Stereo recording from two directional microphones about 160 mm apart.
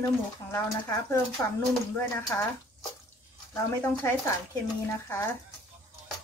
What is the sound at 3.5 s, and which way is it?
Speech, 15° left (ahead or behind).